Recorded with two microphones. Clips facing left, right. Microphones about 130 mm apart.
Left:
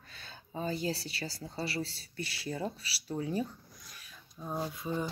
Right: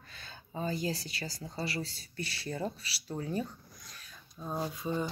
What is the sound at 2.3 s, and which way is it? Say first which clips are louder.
Speech: even; 10° left (ahead or behind).